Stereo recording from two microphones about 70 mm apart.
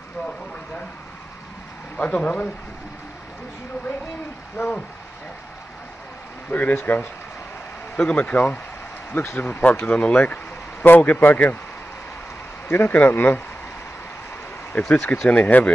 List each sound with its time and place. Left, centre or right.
2.0 s speech: left
4.6 s speech: left
6.5 s speech: left
9.1 s speech: left
9.4 s speech: left
12.6 s speech: left
14.7 s speech: left